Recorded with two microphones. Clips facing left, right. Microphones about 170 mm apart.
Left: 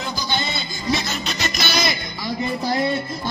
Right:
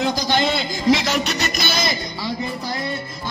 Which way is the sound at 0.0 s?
90° right.